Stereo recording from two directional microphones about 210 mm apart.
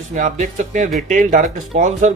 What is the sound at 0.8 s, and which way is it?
Speech, centre (ahead or behind).